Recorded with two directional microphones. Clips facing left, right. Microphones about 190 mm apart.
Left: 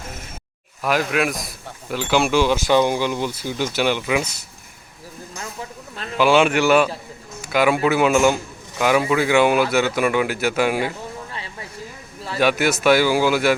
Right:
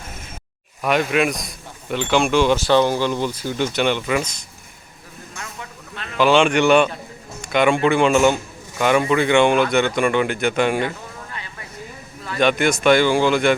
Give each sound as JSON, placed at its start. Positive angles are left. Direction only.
{"t": 0.8, "sound": "a man's voice", "side_deg": 0}
{"t": 5.4, "sound": "a sound", "side_deg": 30}
{"t": 6.1, "sound": "speech", "side_deg": 10}
{"t": 11.3, "sound": "vehicle", "side_deg": 30}
{"t": 12.4, "sound": "a man's voice", "side_deg": 5}